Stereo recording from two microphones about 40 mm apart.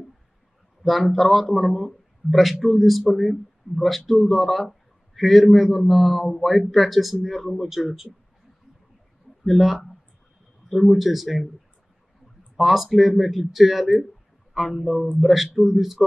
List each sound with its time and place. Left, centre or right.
0.8 s a man's voice: centre
9.4 s a man's voice: centre
12.5 s a man's voice: centre